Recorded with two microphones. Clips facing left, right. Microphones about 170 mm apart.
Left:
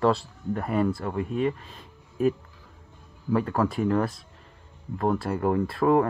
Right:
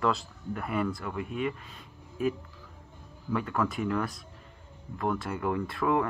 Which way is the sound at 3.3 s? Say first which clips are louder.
Left 5 dB; 35° left (ahead or behind).